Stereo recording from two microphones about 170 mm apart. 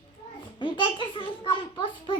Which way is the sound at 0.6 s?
30° left (ahead or behind).